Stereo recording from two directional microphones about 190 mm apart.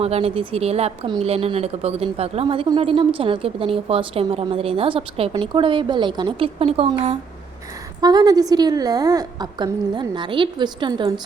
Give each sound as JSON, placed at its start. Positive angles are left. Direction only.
{"t": 0.0, "sound": "a woman's voice", "side_deg": -30}